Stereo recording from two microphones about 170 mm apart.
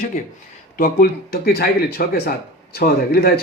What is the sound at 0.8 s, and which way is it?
Speech, 65° left (ahead or behind).